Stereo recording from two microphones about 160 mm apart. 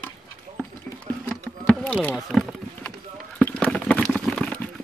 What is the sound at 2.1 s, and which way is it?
Wild animals, centre (ahead or behind).